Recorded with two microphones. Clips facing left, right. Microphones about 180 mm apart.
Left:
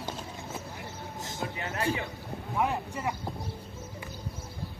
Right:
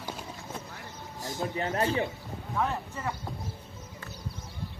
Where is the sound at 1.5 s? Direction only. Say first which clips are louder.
Right 8 dB; 30° right (ahead or behind).